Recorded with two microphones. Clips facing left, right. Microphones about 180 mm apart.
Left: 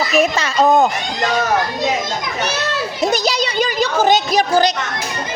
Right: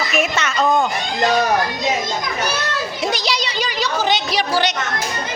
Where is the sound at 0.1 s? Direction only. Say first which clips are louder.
Left 4 dB; 35° left (ahead or behind).